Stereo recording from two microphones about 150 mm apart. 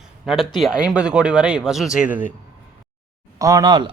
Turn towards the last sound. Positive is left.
turn(degrees=-30)  # may be behind; listen again after turning